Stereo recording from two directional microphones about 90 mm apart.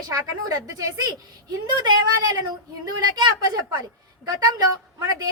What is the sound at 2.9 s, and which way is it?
Speech, 50° right (ahead or behind).